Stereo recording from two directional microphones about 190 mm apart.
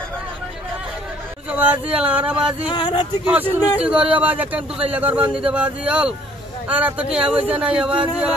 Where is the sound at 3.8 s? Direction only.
5° right (ahead or behind).